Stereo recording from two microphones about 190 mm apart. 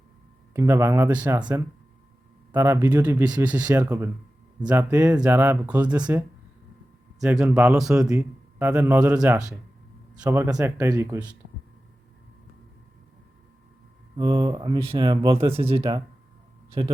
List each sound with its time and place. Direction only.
0.5 s speech: 15° right (ahead or behind)
2.5 s speech: 15° right (ahead or behind)
7.2 s speech: 5° right (ahead or behind)
8.0 s a man's voice: 15° right (ahead or behind)
10.2 s speech: 15° right (ahead or behind)
14.2 s speech: 25° right (ahead or behind)